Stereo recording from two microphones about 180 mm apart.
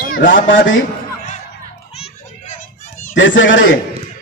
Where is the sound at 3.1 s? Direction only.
90° left.